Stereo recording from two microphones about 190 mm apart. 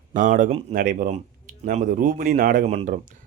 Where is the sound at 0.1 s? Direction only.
40° right (ahead or behind).